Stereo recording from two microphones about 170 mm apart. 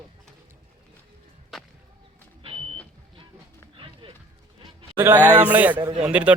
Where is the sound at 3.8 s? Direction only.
30° right (ahead or behind).